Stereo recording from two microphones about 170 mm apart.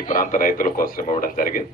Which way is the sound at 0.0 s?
55° left (ahead or behind).